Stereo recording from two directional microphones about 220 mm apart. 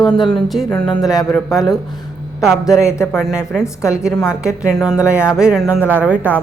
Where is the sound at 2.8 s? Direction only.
15° left (ahead or behind).